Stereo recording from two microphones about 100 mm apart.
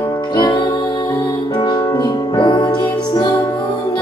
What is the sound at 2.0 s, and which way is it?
Music, 50° left (ahead or behind).